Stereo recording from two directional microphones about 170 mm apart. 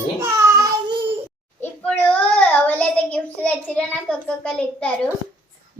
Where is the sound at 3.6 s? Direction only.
Centre (ahead or behind).